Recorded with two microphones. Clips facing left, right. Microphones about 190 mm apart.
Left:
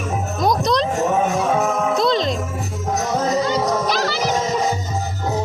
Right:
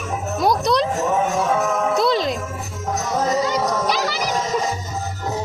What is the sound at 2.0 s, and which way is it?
Music, 5° right (ahead or behind).